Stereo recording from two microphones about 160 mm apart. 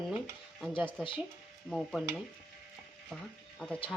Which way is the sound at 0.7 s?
30° left (ahead or behind).